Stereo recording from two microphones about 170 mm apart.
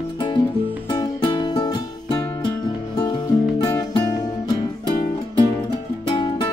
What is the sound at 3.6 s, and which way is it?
Music, 20° left (ahead or behind).